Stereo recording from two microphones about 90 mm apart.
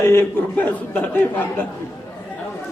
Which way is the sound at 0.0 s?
30° left (ahead or behind).